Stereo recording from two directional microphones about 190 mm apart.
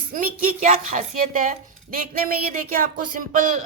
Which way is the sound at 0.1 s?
45° right (ahead or behind).